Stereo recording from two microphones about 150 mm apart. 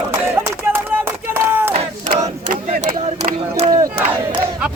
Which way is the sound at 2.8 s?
55° right (ahead or behind).